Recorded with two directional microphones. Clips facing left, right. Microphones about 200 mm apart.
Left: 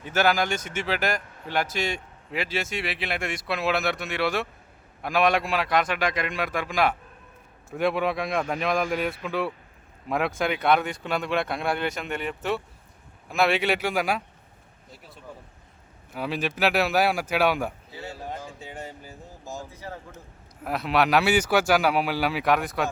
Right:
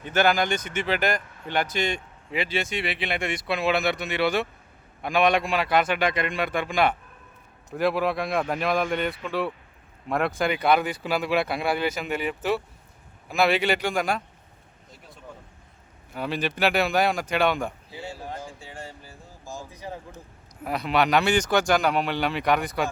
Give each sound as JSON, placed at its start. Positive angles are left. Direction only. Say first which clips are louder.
{"t": 0.0, "sound": "speech", "louder": "right 1 dB", "side_deg": 0}
{"t": 16.1, "sound": "speech", "louder": "even", "side_deg": 0}
{"t": 18.6, "sound": "a sound", "louder": "left 2 dB", "side_deg": 20}
{"t": 19.7, "sound": "speech", "louder": "right 2 dB", "side_deg": -15}
{"t": 20.7, "sound": "speech", "louder": "even", "side_deg": 0}